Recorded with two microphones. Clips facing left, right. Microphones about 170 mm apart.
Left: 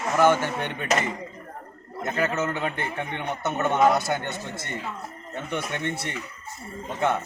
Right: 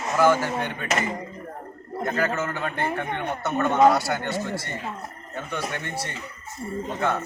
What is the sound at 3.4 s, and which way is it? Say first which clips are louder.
A man's voice: right 2 dB; 20° left (ahead or behind).